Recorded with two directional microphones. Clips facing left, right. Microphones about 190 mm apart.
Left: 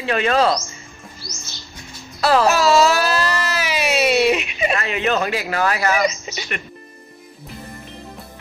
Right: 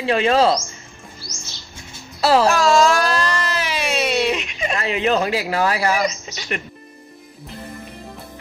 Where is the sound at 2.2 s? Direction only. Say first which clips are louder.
Right 1 dB; 30° right (ahead or behind).